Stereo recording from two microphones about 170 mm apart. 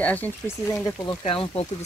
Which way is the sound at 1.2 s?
35° left (ahead or behind).